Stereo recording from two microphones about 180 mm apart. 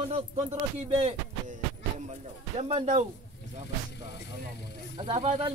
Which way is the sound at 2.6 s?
35° right (ahead or behind).